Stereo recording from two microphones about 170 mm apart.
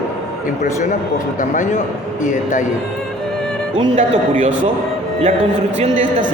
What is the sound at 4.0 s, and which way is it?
Speech, 45° right (ahead or behind).